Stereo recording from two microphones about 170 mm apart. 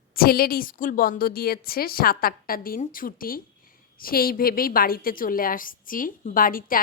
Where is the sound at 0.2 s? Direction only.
60° left (ahead or behind).